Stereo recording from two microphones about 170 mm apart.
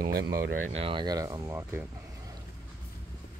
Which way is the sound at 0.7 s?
35° right (ahead or behind).